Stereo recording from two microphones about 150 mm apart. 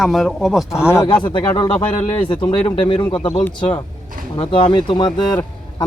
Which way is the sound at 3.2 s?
15° left (ahead or behind).